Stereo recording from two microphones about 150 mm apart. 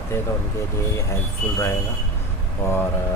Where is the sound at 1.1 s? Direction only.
20° left (ahead or behind).